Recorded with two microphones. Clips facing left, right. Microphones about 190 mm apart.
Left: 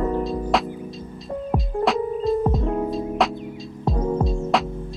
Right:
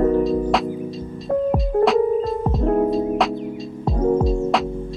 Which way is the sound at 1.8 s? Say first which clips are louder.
Right 4 dB; centre (ahead or behind).